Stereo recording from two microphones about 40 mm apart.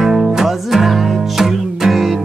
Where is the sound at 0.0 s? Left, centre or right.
Centre.